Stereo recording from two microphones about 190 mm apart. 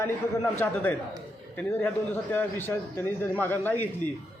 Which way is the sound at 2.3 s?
10° left (ahead or behind).